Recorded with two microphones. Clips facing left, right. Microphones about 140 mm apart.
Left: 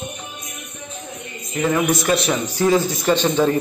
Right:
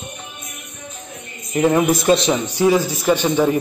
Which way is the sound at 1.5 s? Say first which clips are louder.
Right 4 dB; 35° right (ahead or behind).